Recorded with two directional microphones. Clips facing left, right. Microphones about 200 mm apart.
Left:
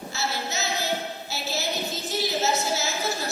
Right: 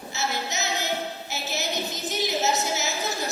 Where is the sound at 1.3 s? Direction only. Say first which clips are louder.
Left 2 dB; 20° right (ahead or behind).